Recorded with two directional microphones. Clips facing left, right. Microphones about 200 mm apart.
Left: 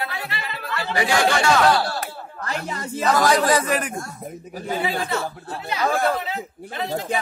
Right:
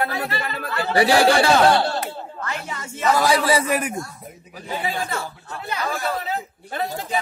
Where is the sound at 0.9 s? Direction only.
35° right (ahead or behind).